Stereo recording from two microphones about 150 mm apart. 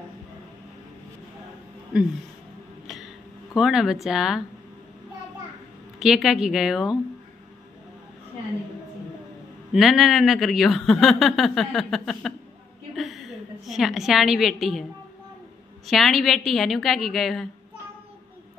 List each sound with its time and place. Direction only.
3.5 s a man's voice: 5° right (ahead or behind)
5.9 s a man's voice: centre (ahead or behind)
9.7 s a man's voice: centre (ahead or behind)
15.9 s a man's voice: centre (ahead or behind)